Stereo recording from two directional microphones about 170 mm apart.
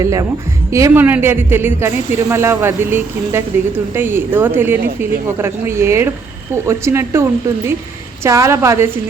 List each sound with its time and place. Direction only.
0.0 s a woman's voice: 20° right (ahead or behind)